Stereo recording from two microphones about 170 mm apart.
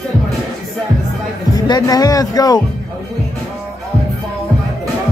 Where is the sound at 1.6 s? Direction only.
25° left (ahead or behind).